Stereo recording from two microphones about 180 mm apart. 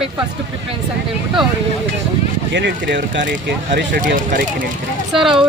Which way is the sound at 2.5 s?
75° right (ahead or behind).